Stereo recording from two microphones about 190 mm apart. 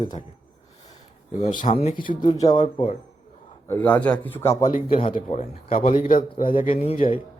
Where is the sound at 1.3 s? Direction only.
40° left (ahead or behind).